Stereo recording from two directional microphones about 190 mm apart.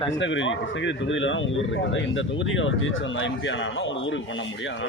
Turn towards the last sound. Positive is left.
turn(degrees=80)